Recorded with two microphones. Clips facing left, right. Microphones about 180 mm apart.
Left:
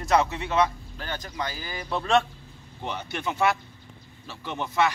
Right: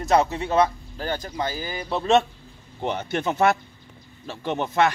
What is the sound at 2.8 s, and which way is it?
Speech, 50° right (ahead or behind).